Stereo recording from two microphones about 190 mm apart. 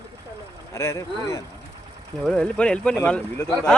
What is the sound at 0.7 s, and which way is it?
Speech, 15° left (ahead or behind).